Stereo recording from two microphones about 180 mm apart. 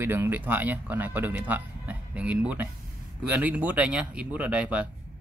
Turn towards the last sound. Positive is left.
turn(degrees=-5)  # may be behind; listen again after turning